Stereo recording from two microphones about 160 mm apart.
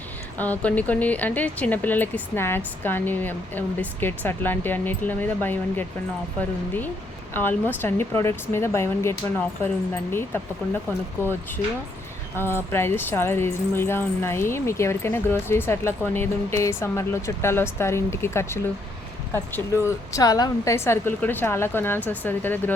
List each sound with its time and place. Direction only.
0.3 s speech: 10° left (ahead or behind)
7.3 s speech: 10° left (ahead or behind)